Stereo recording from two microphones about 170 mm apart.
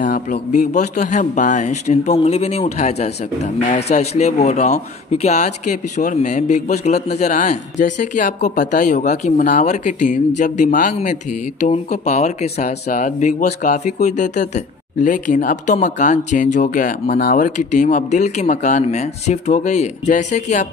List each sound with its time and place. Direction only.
0.0 s speech: 50° left (ahead or behind)